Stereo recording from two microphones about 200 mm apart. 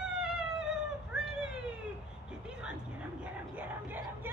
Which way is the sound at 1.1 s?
5° right (ahead or behind).